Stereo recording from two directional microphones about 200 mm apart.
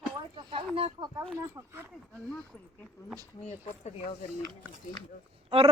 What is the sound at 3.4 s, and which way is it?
Speech, 35° left (ahead or behind).